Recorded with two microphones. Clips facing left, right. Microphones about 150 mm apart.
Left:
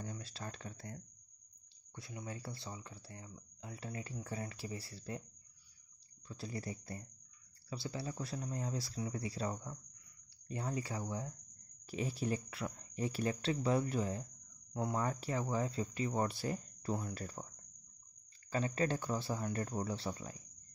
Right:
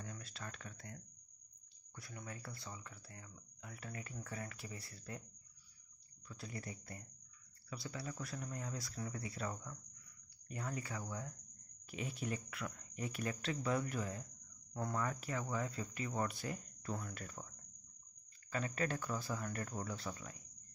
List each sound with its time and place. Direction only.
0.0 s a sound: 30° left (ahead or behind)
2.0 s speech: 25° left (ahead or behind)
6.2 s speech: 30° left (ahead or behind)
14.7 s speech: 15° left (ahead or behind)
15.0 s speech: 30° left (ahead or behind)
18.5 s speech: 30° left (ahead or behind)